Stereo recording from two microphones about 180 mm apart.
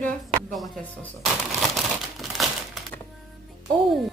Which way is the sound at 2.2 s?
Centre (ahead or behind).